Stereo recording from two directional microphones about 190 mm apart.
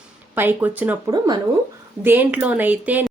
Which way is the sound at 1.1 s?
20° right (ahead or behind).